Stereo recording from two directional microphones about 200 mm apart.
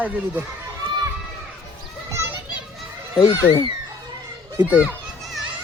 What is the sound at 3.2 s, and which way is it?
Speech, 15° left (ahead or behind).